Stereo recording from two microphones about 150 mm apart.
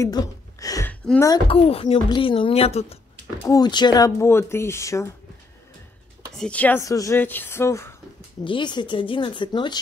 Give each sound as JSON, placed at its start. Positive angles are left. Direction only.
{"t": 0.0, "sound": "a sound", "side_deg": 25}
{"t": 0.8, "sound": "gasp", "side_deg": 10}
{"t": 1.5, "sound": "speech", "side_deg": 40}
{"t": 3.4, "sound": "speech", "side_deg": 25}
{"t": 6.3, "sound": "speech", "side_deg": 5}
{"t": 6.8, "sound": "a man's voice", "side_deg": 20}
{"t": 8.5, "sound": "speech", "side_deg": 30}